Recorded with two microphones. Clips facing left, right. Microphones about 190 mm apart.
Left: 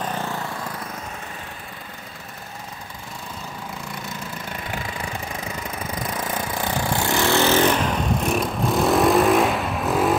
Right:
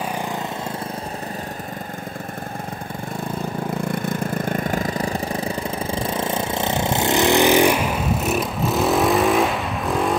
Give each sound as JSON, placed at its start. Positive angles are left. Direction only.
{"t": 0.0, "sound": "lawn mower", "side_deg": -10}
{"t": 3.9, "sound": "engine", "side_deg": -55}